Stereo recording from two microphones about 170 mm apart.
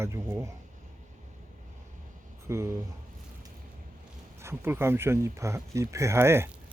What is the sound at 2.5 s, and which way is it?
Speech, 15° right (ahead or behind).